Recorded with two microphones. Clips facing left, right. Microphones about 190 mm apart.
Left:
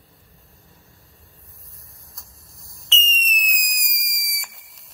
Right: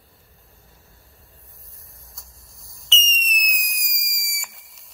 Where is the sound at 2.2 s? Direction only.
Centre (ahead or behind).